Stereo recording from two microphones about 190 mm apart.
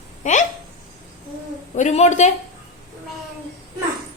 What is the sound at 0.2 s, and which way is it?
Hiccup, 40° left (ahead or behind).